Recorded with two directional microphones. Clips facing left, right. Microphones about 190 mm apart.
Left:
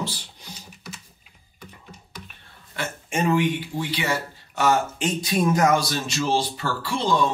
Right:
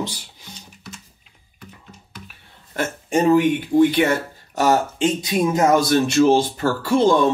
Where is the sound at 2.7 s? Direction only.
40° right (ahead or behind).